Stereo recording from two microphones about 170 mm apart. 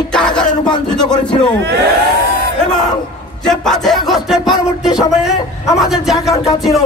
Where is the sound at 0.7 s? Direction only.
25° left (ahead or behind).